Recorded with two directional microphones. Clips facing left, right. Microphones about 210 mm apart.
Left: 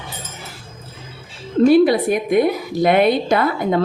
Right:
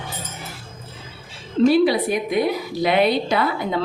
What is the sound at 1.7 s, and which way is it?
A woman's voice, 50° left (ahead or behind).